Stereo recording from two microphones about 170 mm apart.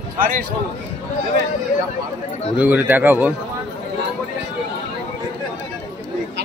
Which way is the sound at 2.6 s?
10° right (ahead or behind).